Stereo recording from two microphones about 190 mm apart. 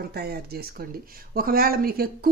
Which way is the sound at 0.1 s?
55° right (ahead or behind).